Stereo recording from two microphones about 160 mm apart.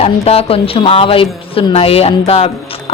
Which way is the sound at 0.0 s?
35° left (ahead or behind).